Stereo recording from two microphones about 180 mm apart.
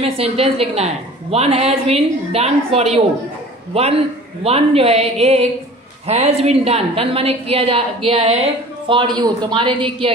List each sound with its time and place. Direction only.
0.0 s a woman's voice: 35° right (ahead or behind)